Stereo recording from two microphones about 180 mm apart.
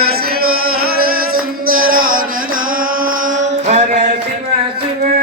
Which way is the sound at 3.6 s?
40° right (ahead or behind).